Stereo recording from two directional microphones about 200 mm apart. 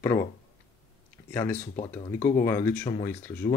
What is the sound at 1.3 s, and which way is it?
Speech, 10° left (ahead or behind).